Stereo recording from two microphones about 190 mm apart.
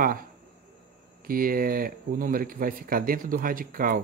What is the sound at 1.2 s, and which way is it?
Speech, 50° right (ahead or behind).